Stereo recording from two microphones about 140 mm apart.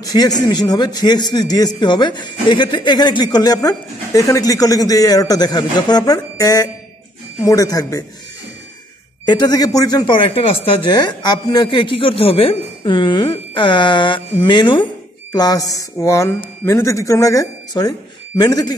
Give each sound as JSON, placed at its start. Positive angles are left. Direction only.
{"t": 0.0, "sound": "a man's voice", "side_deg": 25}
{"t": 9.2, "sound": "a man's voice", "side_deg": 30}